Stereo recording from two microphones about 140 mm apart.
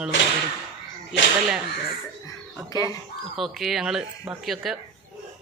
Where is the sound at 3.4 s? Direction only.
Centre (ahead or behind).